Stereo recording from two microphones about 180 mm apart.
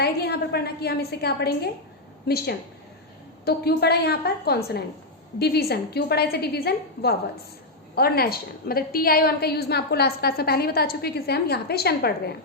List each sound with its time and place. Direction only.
0.0 s a woman's voice: 60° left (ahead or behind)